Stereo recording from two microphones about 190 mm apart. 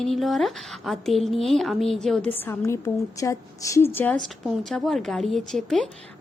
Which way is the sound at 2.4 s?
15° left (ahead or behind).